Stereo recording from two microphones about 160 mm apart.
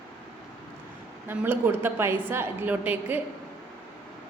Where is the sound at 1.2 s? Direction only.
15° right (ahead or behind).